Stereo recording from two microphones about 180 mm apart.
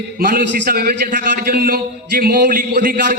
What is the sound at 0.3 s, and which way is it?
A man's voice, 50° right (ahead or behind).